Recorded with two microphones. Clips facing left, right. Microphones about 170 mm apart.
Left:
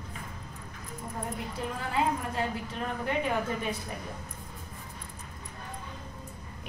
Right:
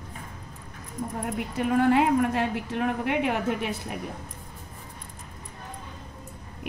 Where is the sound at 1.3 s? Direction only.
70° right (ahead or behind).